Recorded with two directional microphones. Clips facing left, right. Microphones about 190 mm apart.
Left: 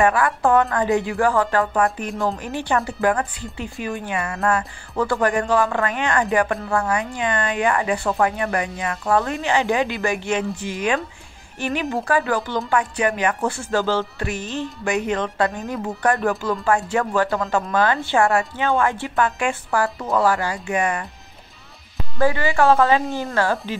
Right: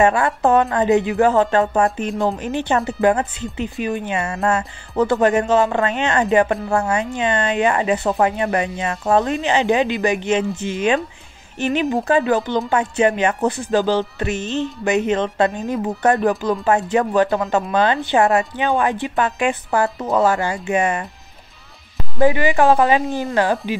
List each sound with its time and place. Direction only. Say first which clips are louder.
0.0 s speech: right 2 dB; 25° right (ahead or behind)
22.2 s a woman's voice: right 3 dB; 20° right (ahead or behind)